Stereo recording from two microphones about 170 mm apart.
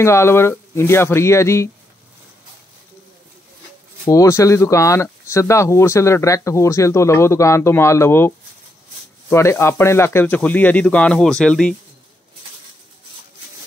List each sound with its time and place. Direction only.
0.0 s speech: 15° left (ahead or behind)
4.1 s speech: 20° left (ahead or behind)
9.3 s speech: 15° left (ahead or behind)